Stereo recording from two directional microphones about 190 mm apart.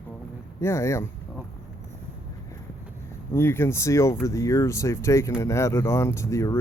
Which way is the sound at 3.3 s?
15° left (ahead or behind).